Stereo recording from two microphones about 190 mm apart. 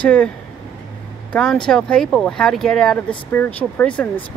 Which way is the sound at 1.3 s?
5° left (ahead or behind).